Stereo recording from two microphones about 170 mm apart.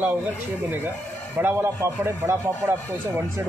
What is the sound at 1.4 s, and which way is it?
A man's voice, 15° right (ahead or behind).